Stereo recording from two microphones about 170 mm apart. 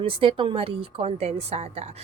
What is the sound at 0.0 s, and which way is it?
A woman's voice, 30° right (ahead or behind).